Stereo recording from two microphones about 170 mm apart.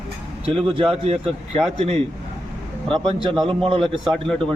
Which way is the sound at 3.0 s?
30° right (ahead or behind).